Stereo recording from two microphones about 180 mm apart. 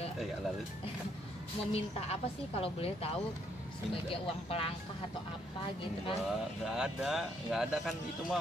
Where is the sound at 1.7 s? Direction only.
35° left (ahead or behind).